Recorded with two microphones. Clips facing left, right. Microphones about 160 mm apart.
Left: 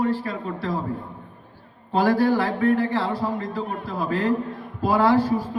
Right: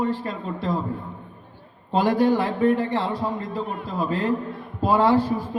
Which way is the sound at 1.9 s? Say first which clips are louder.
Even; 20° right (ahead or behind).